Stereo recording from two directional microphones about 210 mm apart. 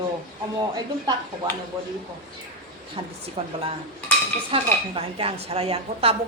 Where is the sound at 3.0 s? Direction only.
25° right (ahead or behind).